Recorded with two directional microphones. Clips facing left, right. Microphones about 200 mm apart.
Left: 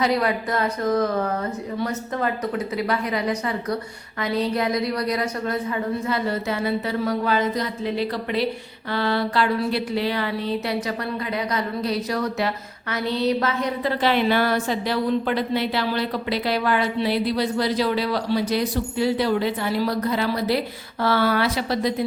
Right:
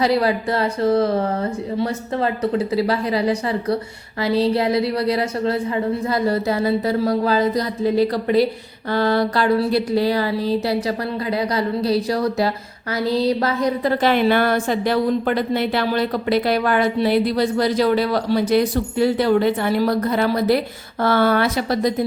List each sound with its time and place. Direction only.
0.0 s a woman's voice: 30° right (ahead or behind)